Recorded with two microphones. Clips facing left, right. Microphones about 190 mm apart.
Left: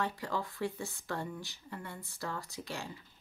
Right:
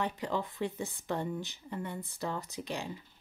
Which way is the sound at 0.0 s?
20° right (ahead or behind).